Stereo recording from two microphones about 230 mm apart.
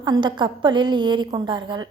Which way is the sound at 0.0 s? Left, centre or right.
Centre.